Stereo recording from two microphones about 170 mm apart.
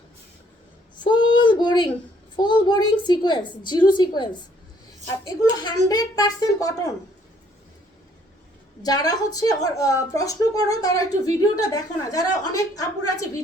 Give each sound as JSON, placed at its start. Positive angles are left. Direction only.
{"t": 0.9, "sound": "a sound", "side_deg": 25}
{"t": 2.3, "sound": "a woman's voice", "side_deg": 25}
{"t": 8.8, "sound": "a woman's voice", "side_deg": 20}